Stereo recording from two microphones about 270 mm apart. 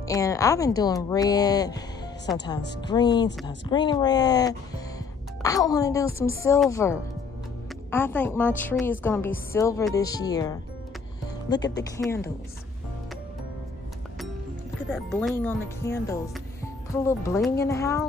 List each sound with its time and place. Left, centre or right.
0.0 s speech: centre
15.0 s speech: centre